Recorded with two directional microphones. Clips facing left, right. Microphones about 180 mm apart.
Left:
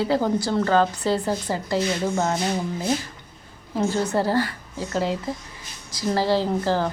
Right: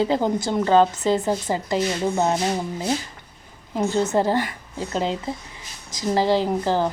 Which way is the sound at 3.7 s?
20° right (ahead or behind).